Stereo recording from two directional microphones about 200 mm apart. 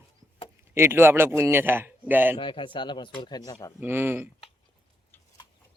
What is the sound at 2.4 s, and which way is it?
Speech, 25° left (ahead or behind).